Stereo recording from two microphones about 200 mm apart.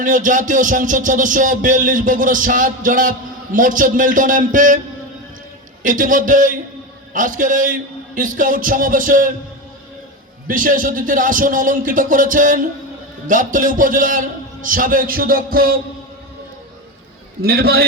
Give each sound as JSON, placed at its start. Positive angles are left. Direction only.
{"t": 0.0, "sound": "speech", "side_deg": -40}
{"t": 5.8, "sound": "a man's voice", "side_deg": -40}
{"t": 10.4, "sound": "a man's voice", "side_deg": -45}
{"t": 17.4, "sound": "a man's voice", "side_deg": -50}